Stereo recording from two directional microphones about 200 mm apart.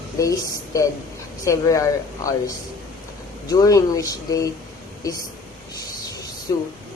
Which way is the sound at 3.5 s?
15° left (ahead or behind).